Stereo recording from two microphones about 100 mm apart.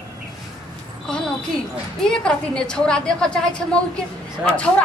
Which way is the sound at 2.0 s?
10° left (ahead or behind).